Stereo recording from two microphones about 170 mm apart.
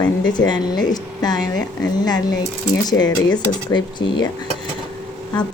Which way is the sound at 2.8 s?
25° left (ahead or behind).